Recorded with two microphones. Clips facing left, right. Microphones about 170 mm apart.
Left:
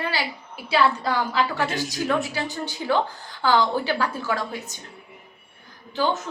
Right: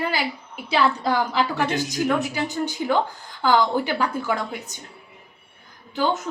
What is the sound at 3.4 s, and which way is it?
A woman's voice, 15° right (ahead or behind).